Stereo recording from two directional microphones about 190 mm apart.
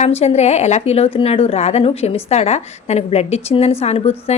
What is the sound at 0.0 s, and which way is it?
A woman's voice, 35° left (ahead or behind).